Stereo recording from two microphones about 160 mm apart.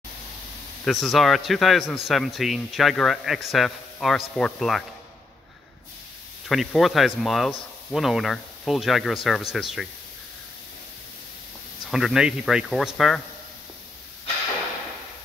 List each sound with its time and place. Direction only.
0.8 s speech: centre (ahead or behind)
6.5 s speech: centre (ahead or behind)
11.9 s speech: 5° right (ahead or behind)